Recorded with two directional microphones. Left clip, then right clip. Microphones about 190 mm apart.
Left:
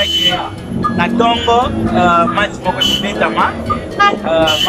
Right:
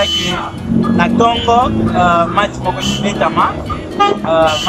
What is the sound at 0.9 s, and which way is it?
Speech, centre (ahead or behind).